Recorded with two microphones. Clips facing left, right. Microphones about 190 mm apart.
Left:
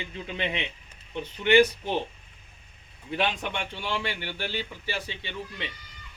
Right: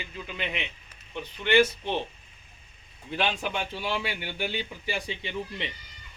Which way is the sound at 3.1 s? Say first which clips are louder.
Even; centre (ahead or behind).